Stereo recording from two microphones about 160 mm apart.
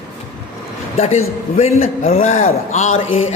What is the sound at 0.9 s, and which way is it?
A man's voice, 45° left (ahead or behind).